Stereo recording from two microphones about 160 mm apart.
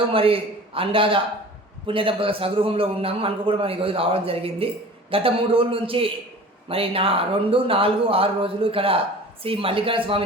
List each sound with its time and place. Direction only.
0.1 s a man's voice: 35° right (ahead or behind)